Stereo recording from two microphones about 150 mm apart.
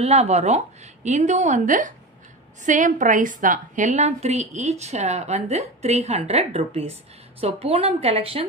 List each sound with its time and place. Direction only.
0.0 s a woman's voice: 45° right (ahead or behind)